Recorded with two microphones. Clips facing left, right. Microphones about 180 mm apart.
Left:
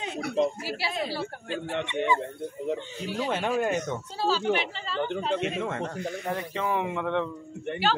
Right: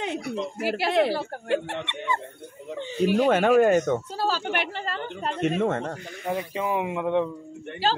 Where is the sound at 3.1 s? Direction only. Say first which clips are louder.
Right 8 dB; 60° right (ahead or behind); by 5.9 s 45° right (ahead or behind).